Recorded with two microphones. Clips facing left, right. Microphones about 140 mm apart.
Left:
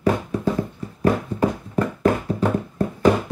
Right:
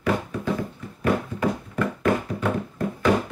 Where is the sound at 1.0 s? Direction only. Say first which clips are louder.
Left 3 dB; 35° left (ahead or behind).